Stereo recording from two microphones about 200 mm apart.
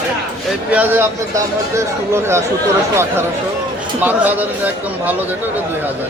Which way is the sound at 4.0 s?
10° right (ahead or behind).